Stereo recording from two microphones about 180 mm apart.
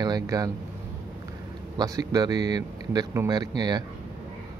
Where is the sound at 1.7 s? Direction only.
20° right (ahead or behind).